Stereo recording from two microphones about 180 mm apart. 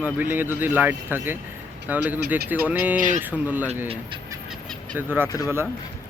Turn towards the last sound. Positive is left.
turn(degrees=20)  # may be behind; listen again after turning